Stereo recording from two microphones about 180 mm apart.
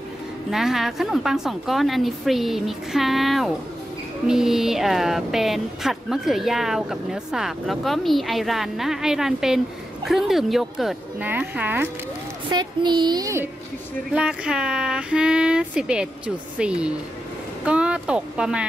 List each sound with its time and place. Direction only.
0.5 s speech: centre (ahead or behind)
12.4 s a woman's voice: 25° right (ahead or behind)
14.1 s speech: 5° right (ahead or behind)